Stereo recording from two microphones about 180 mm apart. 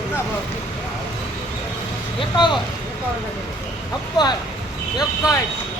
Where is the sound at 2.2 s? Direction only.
25° left (ahead or behind).